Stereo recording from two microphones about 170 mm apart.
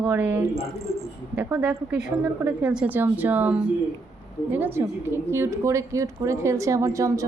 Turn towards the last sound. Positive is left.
turn(degrees=-20)  # may be behind; listen again after turning